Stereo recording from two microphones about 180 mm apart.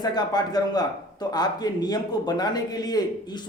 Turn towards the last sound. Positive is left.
turn(degrees=20)  # may be behind; listen again after turning